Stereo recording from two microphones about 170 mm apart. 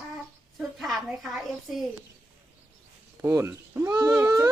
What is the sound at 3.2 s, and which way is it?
Speech, 15° right (ahead or behind).